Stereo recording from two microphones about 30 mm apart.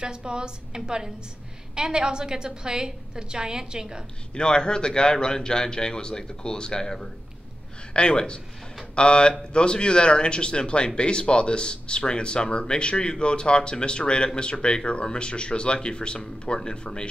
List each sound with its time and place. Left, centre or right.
0.0 s a woman's voice: right
4.4 s speech: left
7.9 s speech: left